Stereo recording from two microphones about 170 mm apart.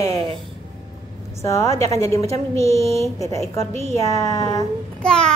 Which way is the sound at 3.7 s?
40° right (ahead or behind).